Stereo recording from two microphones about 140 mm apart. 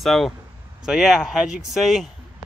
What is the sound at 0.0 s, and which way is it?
Speech, centre (ahead or behind).